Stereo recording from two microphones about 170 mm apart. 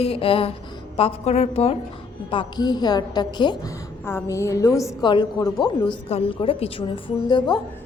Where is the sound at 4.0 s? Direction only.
15° left (ahead or behind).